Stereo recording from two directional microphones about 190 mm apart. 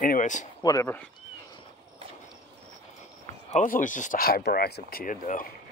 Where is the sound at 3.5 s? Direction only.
40° left (ahead or behind).